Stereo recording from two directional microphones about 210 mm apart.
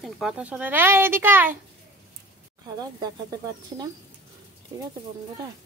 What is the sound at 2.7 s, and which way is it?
Speech, 20° right (ahead or behind).